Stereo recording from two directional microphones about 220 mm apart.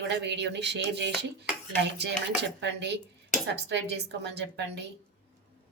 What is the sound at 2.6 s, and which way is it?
A woman's voice, 50° right (ahead or behind).